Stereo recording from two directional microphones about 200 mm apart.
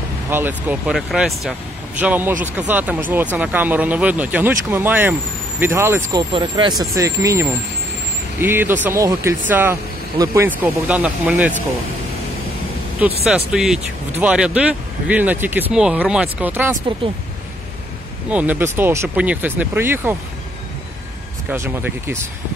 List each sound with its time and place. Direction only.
0.3 s speech: 10° right (ahead or behind)
13.0 s speech: 5° right (ahead or behind)
18.3 s speech: 10° right (ahead or behind)
21.5 s speech: 10° right (ahead or behind)